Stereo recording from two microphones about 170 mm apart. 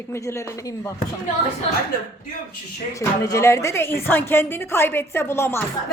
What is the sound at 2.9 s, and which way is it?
A woman's voice, 20° left (ahead or behind).